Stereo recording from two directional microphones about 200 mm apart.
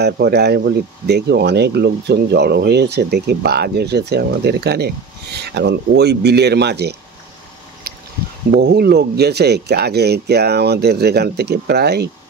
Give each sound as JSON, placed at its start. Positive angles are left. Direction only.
{"t": 0.0, "sound": "speech", "side_deg": -55}
{"t": 7.8, "sound": "a sound", "side_deg": -50}
{"t": 8.5, "sound": "speech", "side_deg": -55}